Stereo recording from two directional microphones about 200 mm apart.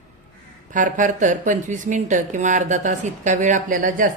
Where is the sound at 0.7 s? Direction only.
40° right (ahead or behind).